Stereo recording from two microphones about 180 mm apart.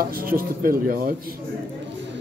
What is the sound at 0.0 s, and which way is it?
Chopping, 55° right (ahead or behind).